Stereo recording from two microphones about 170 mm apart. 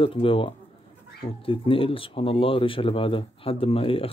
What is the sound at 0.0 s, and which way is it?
Speech, 30° left (ahead or behind).